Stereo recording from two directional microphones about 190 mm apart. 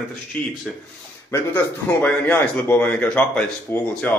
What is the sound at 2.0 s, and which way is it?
Speech, 10° left (ahead or behind).